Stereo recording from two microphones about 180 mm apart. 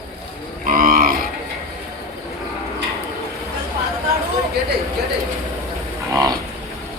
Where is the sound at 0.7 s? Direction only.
50° right (ahead or behind).